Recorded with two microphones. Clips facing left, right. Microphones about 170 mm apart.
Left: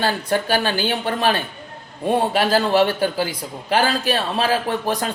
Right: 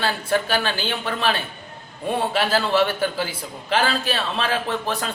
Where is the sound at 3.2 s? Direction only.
15° left (ahead or behind).